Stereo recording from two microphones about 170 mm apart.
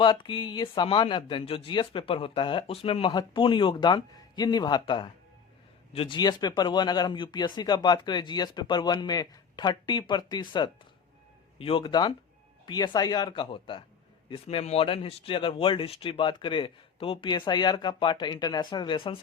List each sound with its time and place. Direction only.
0.0 s speech: 30° left (ahead or behind)